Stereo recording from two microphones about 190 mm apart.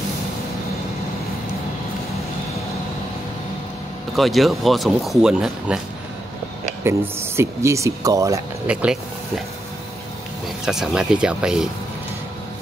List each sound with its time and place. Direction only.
4.1 s speech: centre (ahead or behind)
6.8 s speech: 15° right (ahead or behind)
8.7 s speech: 5° right (ahead or behind)
10.6 s speech: 5° right (ahead or behind)